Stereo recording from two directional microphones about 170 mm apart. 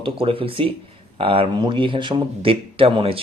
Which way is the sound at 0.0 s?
35° right (ahead or behind).